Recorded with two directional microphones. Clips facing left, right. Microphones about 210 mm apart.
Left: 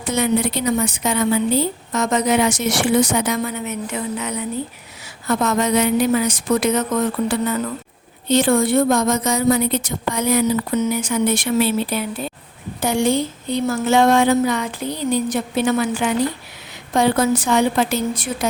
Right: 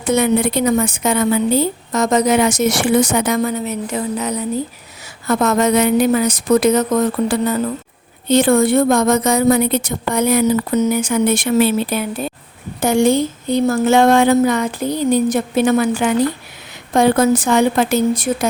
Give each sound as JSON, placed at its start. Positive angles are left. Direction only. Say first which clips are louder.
{"t": 0.0, "sound": "a woman's voice", "louder": "right 4 dB", "side_deg": -55}
{"t": 8.3, "sound": "a woman's voice", "louder": "right 3 dB", "side_deg": -50}